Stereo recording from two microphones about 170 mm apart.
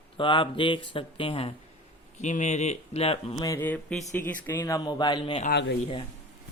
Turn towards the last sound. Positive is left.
turn(degrees=80)